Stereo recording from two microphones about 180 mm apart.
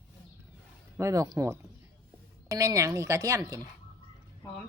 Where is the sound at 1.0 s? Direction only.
15° right (ahead or behind).